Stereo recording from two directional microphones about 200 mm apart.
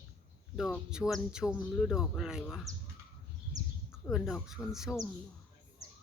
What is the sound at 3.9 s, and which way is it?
Speech, centre (ahead or behind).